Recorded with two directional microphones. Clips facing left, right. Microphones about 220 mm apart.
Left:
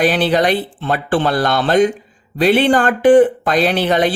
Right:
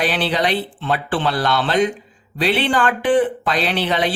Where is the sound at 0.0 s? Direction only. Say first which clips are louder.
Left 6 dB; 45° left (ahead or behind).